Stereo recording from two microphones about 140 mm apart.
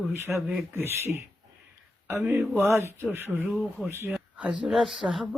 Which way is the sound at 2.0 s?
15° right (ahead or behind).